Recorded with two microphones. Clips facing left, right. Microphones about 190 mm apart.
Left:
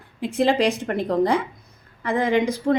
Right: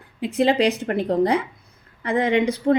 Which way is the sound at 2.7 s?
35° right (ahead or behind).